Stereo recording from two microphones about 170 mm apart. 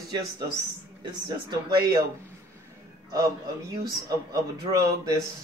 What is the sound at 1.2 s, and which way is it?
Speech, 25° right (ahead or behind).